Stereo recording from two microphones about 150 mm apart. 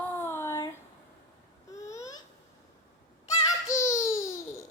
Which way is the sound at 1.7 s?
20° left (ahead or behind).